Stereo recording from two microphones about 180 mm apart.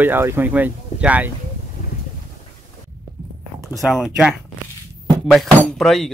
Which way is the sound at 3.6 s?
Centre (ahead or behind).